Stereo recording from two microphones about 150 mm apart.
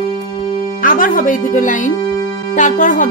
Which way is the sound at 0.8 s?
65° left (ahead or behind).